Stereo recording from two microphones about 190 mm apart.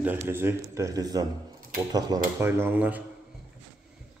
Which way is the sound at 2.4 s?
10° right (ahead or behind).